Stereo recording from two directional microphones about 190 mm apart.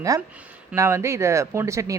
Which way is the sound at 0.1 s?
20° right (ahead or behind).